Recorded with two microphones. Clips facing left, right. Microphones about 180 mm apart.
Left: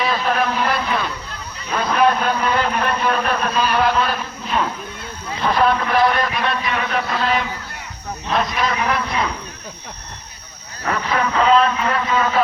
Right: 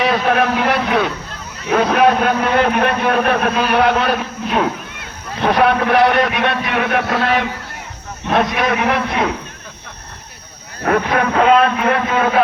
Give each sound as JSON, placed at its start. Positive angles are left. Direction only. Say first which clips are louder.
{"t": 0.0, "sound": "a man's voice", "louder": "right 4 dB", "side_deg": -65}
{"t": 10.8, "sound": "a man's voice", "louder": "right 5 dB", "side_deg": -55}